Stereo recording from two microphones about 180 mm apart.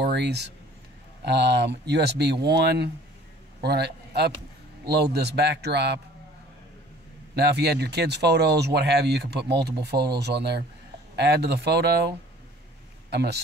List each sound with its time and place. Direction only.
0.0 s a man's voice: 65° right (ahead or behind)
7.3 s speech: 65° right (ahead or behind)
13.1 s speech: 65° right (ahead or behind)